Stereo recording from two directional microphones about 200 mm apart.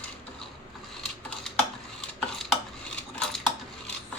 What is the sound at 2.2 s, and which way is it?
Cutlery, centre (ahead or behind).